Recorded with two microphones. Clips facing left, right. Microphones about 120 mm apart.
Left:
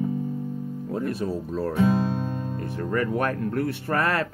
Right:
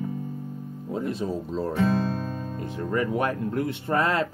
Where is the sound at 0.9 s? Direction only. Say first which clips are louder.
Even; 20° right (ahead or behind).